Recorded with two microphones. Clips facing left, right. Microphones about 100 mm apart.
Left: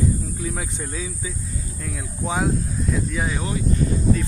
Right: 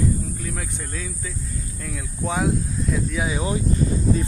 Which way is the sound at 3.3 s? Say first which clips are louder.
Right 2 dB; 20° right (ahead or behind).